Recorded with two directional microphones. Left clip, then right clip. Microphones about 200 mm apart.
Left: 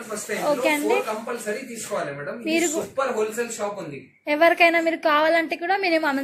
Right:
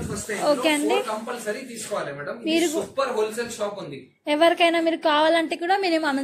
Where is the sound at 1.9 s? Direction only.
Centre (ahead or behind).